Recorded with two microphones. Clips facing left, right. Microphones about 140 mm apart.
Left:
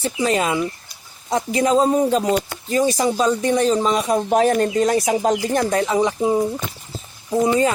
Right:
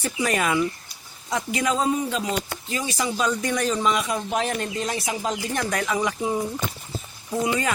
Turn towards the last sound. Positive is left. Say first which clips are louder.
# left 8 dB
turn(degrees=30)  # may be behind; listen again after turning